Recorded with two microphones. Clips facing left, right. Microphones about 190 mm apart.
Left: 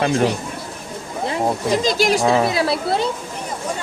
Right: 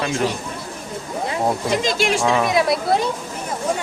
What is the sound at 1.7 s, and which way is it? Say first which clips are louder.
Speech: left 2 dB; 40° left (ahead or behind).